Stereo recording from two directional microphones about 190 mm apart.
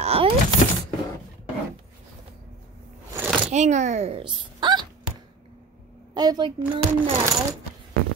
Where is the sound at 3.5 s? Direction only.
40° right (ahead or behind).